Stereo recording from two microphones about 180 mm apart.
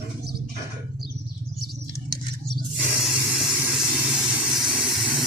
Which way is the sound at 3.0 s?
Centre (ahead or behind).